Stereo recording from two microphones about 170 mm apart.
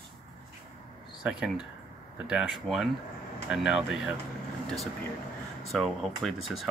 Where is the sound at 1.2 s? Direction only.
5° right (ahead or behind).